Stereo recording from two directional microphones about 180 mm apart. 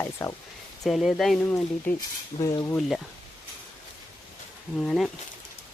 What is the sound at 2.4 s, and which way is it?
Speech, 20° left (ahead or behind).